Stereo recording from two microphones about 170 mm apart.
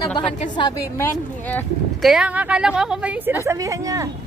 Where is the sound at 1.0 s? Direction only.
10° left (ahead or behind).